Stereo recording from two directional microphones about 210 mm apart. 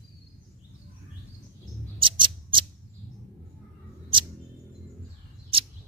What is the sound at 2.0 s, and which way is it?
Scissors, 25° right (ahead or behind).